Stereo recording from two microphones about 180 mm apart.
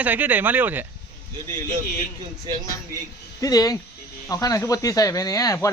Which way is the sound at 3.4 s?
20° left (ahead or behind).